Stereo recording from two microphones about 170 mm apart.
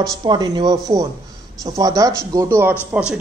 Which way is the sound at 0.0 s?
25° right (ahead or behind).